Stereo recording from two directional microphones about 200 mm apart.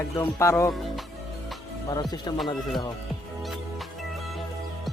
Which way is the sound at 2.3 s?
20° left (ahead or behind).